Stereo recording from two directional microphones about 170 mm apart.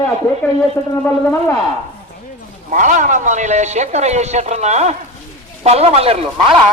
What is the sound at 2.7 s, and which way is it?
Speech, 50° right (ahead or behind).